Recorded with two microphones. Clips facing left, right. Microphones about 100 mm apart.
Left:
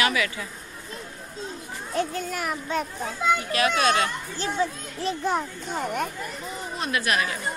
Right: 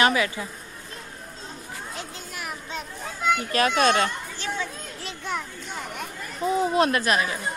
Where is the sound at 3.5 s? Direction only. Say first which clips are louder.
Right 4 dB; 35° right (ahead or behind).